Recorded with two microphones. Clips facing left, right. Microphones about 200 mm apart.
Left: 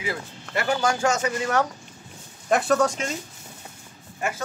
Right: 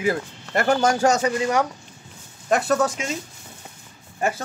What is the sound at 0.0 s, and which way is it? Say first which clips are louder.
Speech: right 7 dB; 45° right (ahead or behind).